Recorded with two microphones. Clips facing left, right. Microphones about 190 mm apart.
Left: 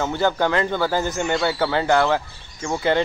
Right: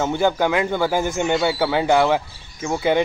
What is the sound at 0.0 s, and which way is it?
Speech, 15° right (ahead or behind).